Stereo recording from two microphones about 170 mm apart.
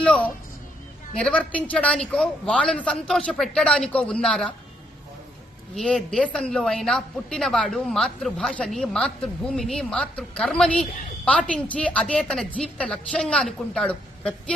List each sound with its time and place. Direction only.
0.0 s a sound: 10° left (ahead or behind)
1.2 s a man's voice: 5° left (ahead or behind)
5.7 s a woman's voice: centre (ahead or behind)